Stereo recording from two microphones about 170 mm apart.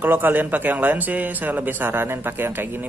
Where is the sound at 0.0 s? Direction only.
10° right (ahead or behind).